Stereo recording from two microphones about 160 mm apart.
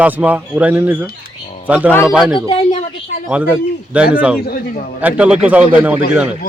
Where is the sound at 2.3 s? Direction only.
35° left (ahead or behind).